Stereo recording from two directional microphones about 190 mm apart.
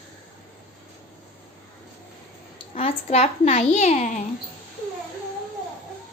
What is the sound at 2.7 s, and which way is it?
A child's voice, 35° left (ahead or behind).